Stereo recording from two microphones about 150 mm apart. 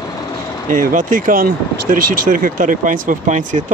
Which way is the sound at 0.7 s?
60° right (ahead or behind).